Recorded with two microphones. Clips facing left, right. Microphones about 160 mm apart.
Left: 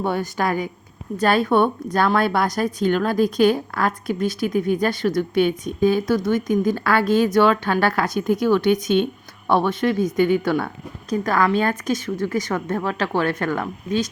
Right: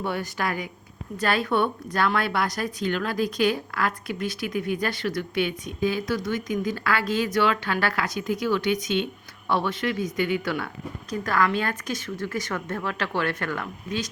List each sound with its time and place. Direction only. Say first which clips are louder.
0.0 s speech: left 6 dB; 50° left (ahead or behind)